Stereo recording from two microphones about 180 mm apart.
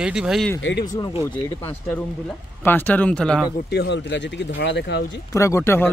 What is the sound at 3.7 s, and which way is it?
Speech, 70° left (ahead or behind).